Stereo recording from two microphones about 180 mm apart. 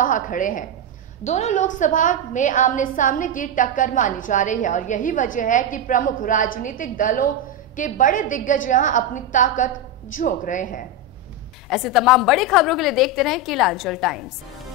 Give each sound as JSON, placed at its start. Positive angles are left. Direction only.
{"t": 0.0, "sound": "a woman's voice", "side_deg": 45}
{"t": 11.7, "sound": "a woman's voice", "side_deg": 0}